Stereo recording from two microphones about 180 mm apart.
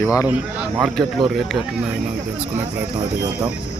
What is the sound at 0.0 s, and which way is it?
Speech, 20° left (ahead or behind).